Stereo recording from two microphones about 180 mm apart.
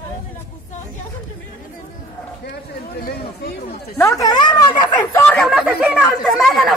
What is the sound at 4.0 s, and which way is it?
Speech, 20° left (ahead or behind).